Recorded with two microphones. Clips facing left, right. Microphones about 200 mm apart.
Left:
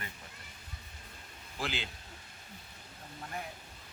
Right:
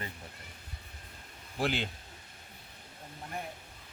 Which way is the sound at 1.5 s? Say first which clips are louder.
Right 6 dB; 55° right (ahead or behind).